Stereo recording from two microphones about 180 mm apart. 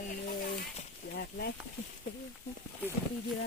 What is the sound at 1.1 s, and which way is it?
Speech, 60° left (ahead or behind).